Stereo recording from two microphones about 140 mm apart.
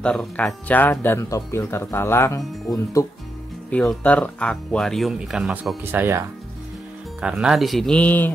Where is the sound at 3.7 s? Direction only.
10° left (ahead or behind).